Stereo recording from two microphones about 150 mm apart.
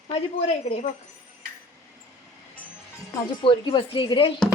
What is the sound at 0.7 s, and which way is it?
Speech, 45° left (ahead or behind).